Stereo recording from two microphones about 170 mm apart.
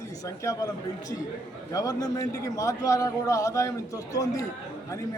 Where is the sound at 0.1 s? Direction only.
20° left (ahead or behind).